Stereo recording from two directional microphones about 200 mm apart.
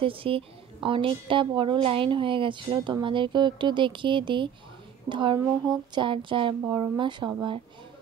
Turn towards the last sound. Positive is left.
turn(degrees=-25)  # may be behind; listen again after turning